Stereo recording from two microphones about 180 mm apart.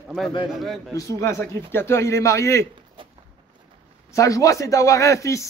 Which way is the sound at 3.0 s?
30° right (ahead or behind).